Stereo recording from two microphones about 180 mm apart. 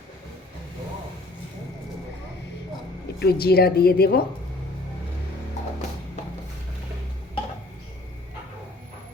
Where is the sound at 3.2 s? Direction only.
60° left (ahead or behind).